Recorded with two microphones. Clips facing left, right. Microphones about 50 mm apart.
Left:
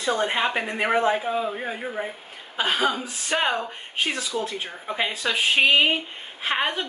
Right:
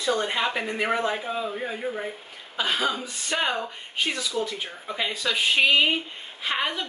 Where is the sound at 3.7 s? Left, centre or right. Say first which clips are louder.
Left 1 dB; left.